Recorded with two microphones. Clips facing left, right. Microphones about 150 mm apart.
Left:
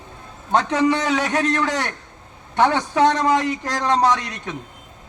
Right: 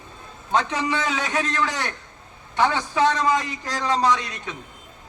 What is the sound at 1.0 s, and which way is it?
A man's voice, 60° left (ahead or behind).